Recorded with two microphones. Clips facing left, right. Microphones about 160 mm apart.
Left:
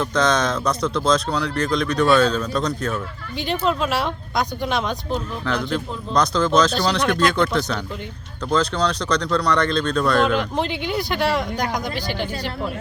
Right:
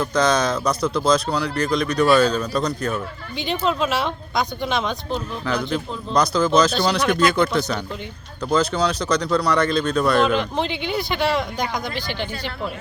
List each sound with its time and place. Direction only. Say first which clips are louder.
0.0 s speech: right 1 dB; centre (ahead or behind)
11.9 s speech: left 2 dB; 40° left (ahead or behind)